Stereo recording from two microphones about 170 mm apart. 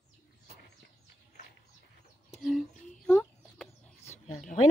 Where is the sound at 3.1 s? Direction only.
10° left (ahead or behind).